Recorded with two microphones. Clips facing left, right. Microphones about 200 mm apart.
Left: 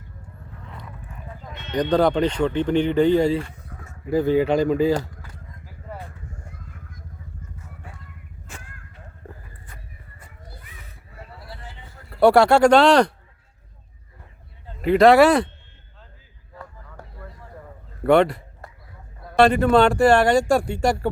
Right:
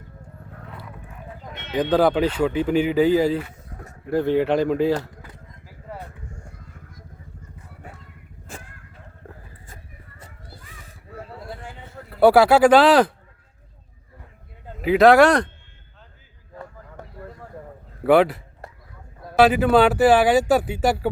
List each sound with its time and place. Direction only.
1.7 s speech: 5° right (ahead or behind)
11.3 s vehicle: 50° right (ahead or behind)
12.2 s speech: 5° right (ahead or behind)
14.8 s speech: centre (ahead or behind)
17.0 s a sound: 20° right (ahead or behind)
18.0 s speech: 5° right (ahead or behind)